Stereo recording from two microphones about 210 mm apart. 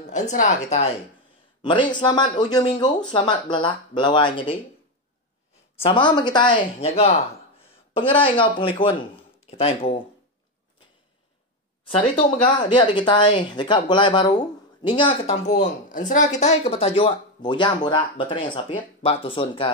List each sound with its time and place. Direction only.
0.0 s speech: 35° left (ahead or behind)
5.8 s speech: 25° left (ahead or behind)
11.9 s speech: 25° left (ahead or behind)